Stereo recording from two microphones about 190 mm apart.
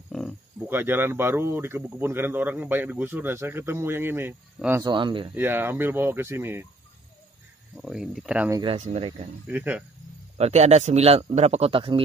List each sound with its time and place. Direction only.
0.7 s speech: 10° right (ahead or behind)
4.8 s speech: 25° right (ahead or behind)
5.3 s speech: 10° right (ahead or behind)
7.7 s speech: centre (ahead or behind)
8.5 s speech: 20° right (ahead or behind)
8.7 s a man's voice: 30° right (ahead or behind)
9.5 s speech: 10° right (ahead or behind)
10.3 s a man's voice: 35° right (ahead or behind)